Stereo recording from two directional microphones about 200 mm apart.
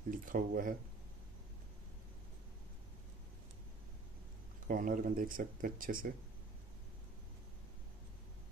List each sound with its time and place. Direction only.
0.2 s speech: 45° right (ahead or behind)
4.6 s speech: 40° right (ahead or behind)